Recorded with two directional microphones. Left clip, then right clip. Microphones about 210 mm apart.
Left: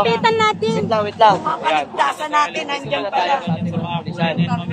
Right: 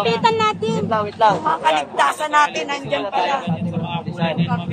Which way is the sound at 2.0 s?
35° right (ahead or behind).